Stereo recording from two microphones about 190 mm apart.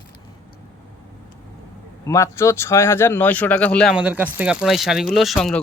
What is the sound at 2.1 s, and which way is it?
Speech, 15° left (ahead or behind).